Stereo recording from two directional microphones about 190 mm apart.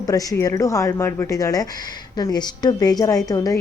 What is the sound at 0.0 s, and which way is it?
A woman's voice, 20° left (ahead or behind).